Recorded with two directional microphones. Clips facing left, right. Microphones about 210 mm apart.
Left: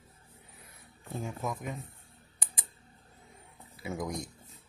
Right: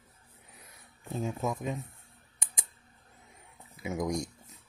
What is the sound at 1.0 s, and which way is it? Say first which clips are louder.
Speech: right 4 dB; 20° right (ahead or behind).